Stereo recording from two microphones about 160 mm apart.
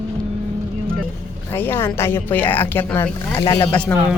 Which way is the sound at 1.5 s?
15° left (ahead or behind).